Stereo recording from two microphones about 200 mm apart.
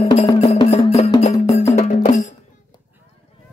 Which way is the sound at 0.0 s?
30° left (ahead or behind).